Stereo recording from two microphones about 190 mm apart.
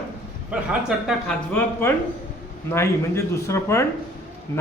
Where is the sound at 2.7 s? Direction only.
15° left (ahead or behind).